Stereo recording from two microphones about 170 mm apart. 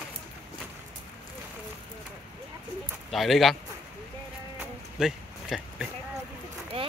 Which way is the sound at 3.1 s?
Centre (ahead or behind).